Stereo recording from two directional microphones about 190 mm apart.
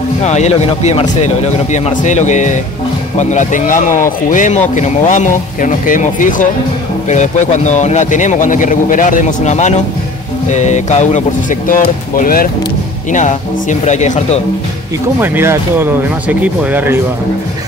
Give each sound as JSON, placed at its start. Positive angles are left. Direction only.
{"t": 0.2, "sound": "a man's voice", "side_deg": 35}
{"t": 15.1, "sound": "speech", "side_deg": -10}